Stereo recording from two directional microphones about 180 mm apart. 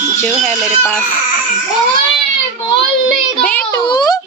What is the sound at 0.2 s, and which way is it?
Female singing, 10° left (ahead or behind).